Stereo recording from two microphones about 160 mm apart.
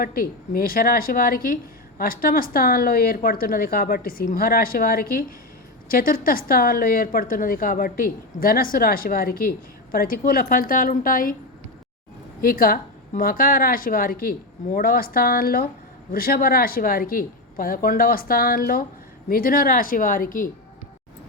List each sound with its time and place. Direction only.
0.0 s a woman's voice: 65° left (ahead or behind)
12.4 s a woman's voice: 65° left (ahead or behind)